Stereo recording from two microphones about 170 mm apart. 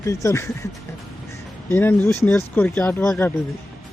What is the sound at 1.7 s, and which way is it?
Speech, 15° left (ahead or behind).